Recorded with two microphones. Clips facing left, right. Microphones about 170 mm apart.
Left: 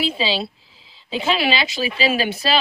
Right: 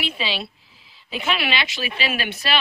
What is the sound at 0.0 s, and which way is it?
Speech, 30° left (ahead or behind).